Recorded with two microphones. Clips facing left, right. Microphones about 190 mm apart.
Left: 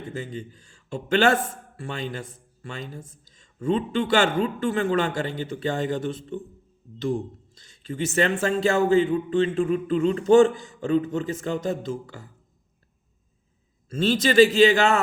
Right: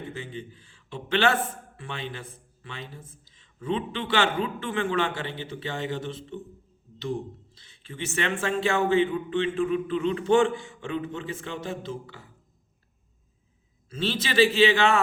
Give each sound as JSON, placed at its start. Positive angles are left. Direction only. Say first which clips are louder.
{"t": 0.1, "sound": "speech", "louder": "left 4 dB", "side_deg": 40}
{"t": 7.5, "sound": "a man's voice", "louder": "left 9 dB", "side_deg": 45}
{"t": 13.9, "sound": "speech", "louder": "left 7 dB", "side_deg": 45}